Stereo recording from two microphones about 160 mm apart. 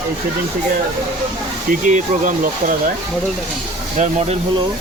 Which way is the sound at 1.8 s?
50° right (ahead or behind).